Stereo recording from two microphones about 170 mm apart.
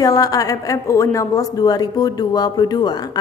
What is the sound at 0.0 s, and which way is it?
A woman's voice, 20° left (ahead or behind).